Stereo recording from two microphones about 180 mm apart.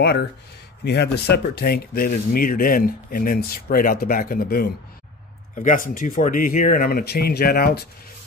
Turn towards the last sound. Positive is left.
turn(degrees=60)  # may be behind; listen again after turning